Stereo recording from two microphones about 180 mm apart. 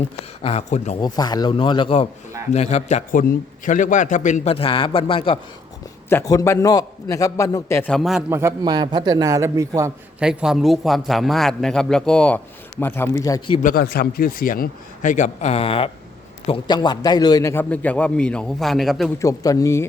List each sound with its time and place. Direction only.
0.4 s a man's voice: 35° left (ahead or behind)
0.9 s a man's voice: 20° left (ahead or behind)
6.1 s a man's voice: 15° left (ahead or behind)
8.3 s a man's voice: 15° right (ahead or behind)
10.2 s a man's voice: 5° right (ahead or behind); by 13.4 s 20° left (ahead or behind)
13.6 s a man's voice: 50° left (ahead or behind); by 19.1 s centre (ahead or behind)
19.2 s a man's voice: 20° left (ahead or behind)